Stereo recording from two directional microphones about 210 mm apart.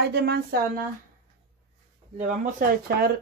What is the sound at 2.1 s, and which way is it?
Speech, 35° right (ahead or behind).